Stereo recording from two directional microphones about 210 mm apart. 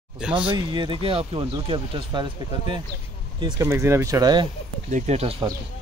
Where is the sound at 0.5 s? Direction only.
20° right (ahead or behind).